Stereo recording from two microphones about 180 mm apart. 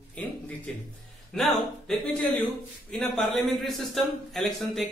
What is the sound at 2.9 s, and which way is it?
A man's voice, centre (ahead or behind).